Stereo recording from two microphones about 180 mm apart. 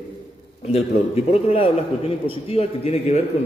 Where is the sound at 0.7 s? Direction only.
35° left (ahead or behind).